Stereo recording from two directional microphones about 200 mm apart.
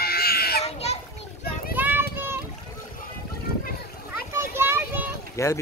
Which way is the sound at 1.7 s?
10° right (ahead or behind).